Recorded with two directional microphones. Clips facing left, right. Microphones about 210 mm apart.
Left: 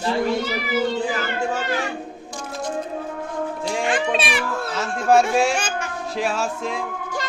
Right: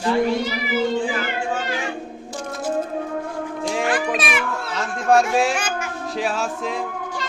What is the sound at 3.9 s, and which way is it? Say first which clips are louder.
Speech: even; 25° left (ahead or behind).